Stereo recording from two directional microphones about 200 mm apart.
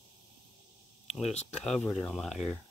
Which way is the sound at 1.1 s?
30° left (ahead or behind).